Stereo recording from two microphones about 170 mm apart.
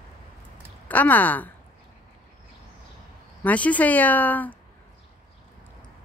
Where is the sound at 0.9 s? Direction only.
10° left (ahead or behind).